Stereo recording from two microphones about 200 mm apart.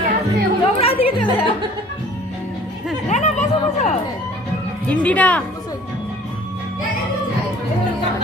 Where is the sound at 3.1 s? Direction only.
35° left (ahead or behind).